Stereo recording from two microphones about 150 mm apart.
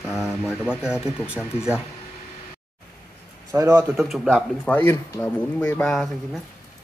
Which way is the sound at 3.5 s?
20° right (ahead or behind).